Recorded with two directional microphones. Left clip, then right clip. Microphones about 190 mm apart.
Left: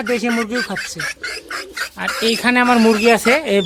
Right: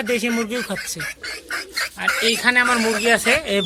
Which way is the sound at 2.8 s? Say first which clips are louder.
Left 6 dB; centre (ahead or behind).